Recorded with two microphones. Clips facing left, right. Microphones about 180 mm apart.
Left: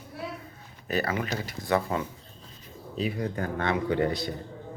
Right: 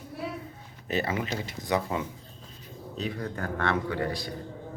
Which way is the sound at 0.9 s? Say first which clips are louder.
Left 1 dB; 25° right (ahead or behind).